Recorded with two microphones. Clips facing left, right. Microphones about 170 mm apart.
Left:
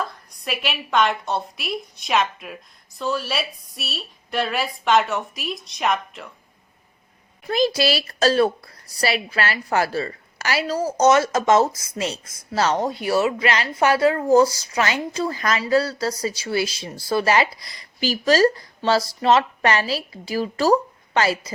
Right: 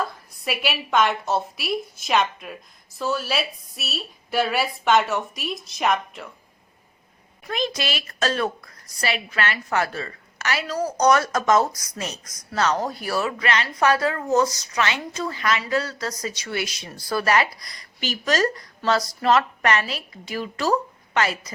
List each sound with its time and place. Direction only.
0.0 s a woman's voice: 5° right (ahead or behind)
7.4 s speech: 35° left (ahead or behind)